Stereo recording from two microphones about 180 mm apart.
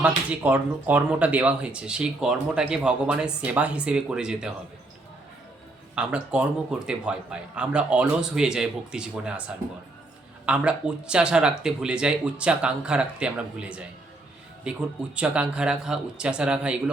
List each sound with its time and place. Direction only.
0.0 s speech: 10° right (ahead or behind)
5.9 s speech: 5° right (ahead or behind)
10.4 s speech: 5° right (ahead or behind)